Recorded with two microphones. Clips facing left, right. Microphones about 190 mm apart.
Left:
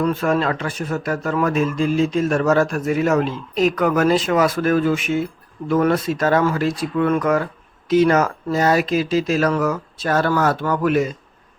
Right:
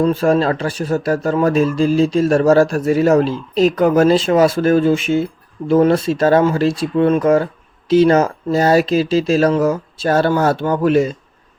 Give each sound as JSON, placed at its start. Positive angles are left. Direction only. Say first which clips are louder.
{"t": 0.0, "sound": "speech", "louder": "right 5 dB", "side_deg": -30}